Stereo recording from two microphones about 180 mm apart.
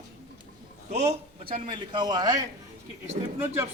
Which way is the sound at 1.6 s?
25° right (ahead or behind).